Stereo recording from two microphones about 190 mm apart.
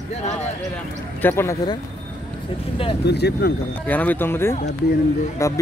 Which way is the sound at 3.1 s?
60° left (ahead or behind).